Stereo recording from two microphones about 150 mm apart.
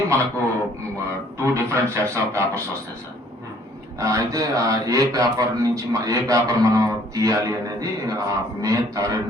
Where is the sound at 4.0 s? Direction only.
20° right (ahead or behind).